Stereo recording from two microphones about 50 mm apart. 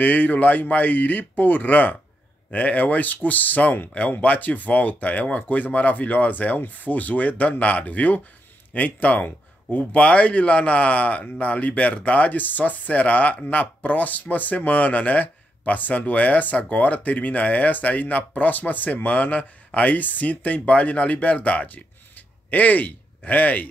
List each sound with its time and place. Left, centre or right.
0.0 s a man's voice: left